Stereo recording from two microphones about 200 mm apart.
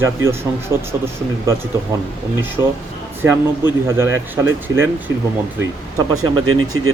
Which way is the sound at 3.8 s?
10° right (ahead or behind).